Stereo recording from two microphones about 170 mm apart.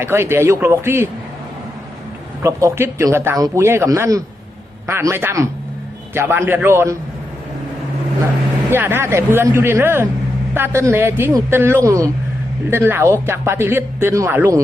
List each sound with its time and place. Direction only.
0.0 s speech: 15° right (ahead or behind)
2.4 s speech: 15° right (ahead or behind)
8.7 s speech: 15° right (ahead or behind)